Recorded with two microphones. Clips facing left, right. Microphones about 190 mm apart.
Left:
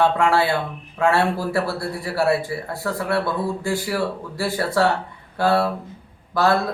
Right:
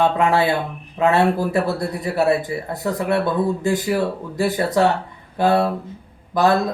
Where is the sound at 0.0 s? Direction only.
20° right (ahead or behind).